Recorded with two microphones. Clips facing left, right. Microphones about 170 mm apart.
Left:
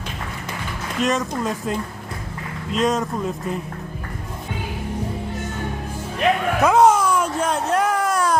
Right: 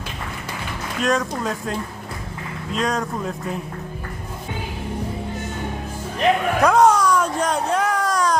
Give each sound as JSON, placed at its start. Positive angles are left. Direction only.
{"t": 1.0, "sound": "speech", "side_deg": 0}
{"t": 6.6, "sound": "babbling", "side_deg": 5}
{"t": 7.1, "sound": "a sound", "side_deg": 5}